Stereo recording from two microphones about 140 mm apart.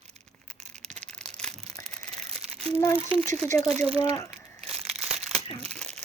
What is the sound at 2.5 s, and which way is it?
Crumpling, 45° right (ahead or behind).